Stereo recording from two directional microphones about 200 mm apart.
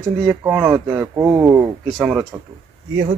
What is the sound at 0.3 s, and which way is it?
Speech, 10° right (ahead or behind).